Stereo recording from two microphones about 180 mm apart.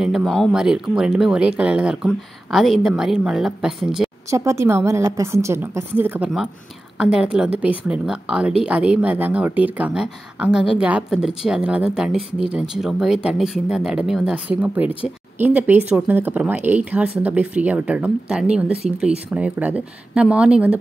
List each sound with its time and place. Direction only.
0.0 s speech: centre (ahead or behind)
4.3 s speech: 15° right (ahead or behind)